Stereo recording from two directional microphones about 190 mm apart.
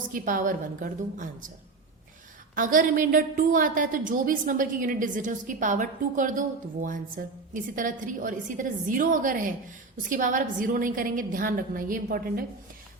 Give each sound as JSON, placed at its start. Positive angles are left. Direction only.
{"t": 0.1, "sound": "a woman's voice", "side_deg": -45}
{"t": 2.6, "sound": "a woman's voice", "side_deg": -45}